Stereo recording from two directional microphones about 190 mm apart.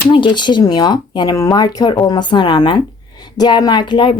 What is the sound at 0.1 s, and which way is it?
A woman's voice, 25° left (ahead or behind).